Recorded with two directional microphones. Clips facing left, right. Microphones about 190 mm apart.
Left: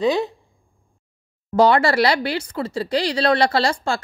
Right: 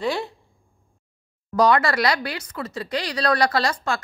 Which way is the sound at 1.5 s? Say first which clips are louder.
Left 3 dB; 30° left (ahead or behind).